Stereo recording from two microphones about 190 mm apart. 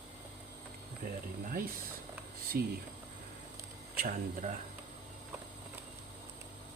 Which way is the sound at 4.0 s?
50° right (ahead or behind).